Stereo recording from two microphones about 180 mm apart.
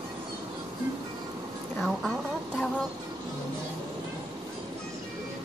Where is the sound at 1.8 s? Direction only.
Centre (ahead or behind).